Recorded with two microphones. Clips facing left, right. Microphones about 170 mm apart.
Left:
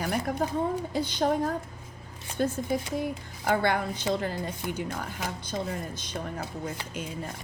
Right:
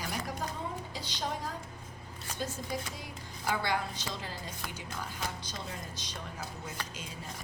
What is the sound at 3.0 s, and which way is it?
A woman's voice, 55° left (ahead or behind).